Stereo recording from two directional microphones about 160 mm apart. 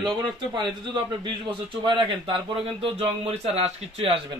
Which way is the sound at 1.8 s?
30° right (ahead or behind).